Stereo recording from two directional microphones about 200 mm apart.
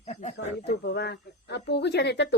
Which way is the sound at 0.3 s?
60° left (ahead or behind).